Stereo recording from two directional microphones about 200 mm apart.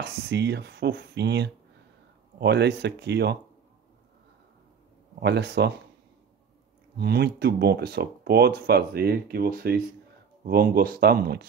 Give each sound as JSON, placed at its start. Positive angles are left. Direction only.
{"t": 0.0, "sound": "speech", "side_deg": -60}
{"t": 5.2, "sound": "speech", "side_deg": -55}
{"t": 7.0, "sound": "speech", "side_deg": -55}